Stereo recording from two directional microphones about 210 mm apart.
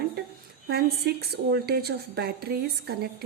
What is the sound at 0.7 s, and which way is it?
A woman's voice, 50° right (ahead or behind).